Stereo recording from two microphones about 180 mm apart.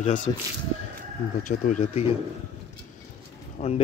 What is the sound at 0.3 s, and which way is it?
Speech, 20° left (ahead or behind).